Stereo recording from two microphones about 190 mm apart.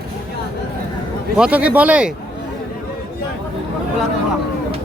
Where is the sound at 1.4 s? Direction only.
5° right (ahead or behind).